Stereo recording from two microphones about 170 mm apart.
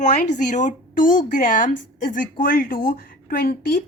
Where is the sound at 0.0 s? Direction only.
45° left (ahead or behind).